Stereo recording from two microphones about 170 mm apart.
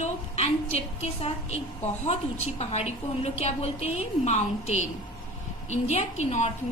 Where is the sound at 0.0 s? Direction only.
35° left (ahead or behind).